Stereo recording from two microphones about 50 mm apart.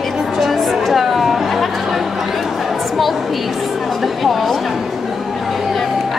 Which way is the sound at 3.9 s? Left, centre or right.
Centre.